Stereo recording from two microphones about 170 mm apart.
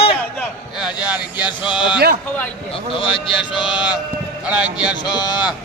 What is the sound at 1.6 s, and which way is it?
Speech, 30° left (ahead or behind).